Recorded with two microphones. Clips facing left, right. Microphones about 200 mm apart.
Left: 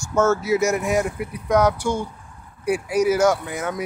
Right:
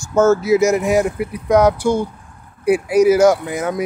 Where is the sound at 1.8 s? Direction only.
35° right (ahead or behind).